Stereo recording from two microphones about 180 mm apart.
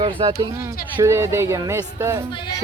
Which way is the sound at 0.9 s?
15° right (ahead or behind).